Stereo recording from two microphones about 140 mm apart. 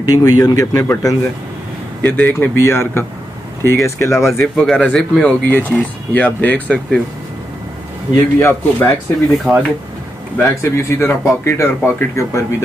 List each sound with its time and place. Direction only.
0.0 s speech: 25° left (ahead or behind)
4.4 s a man's voice: centre (ahead or behind)
8.1 s speech: 20° left (ahead or behind)
9.4 s a man's voice: centre (ahead or behind)
10.4 s speech: 20° left (ahead or behind)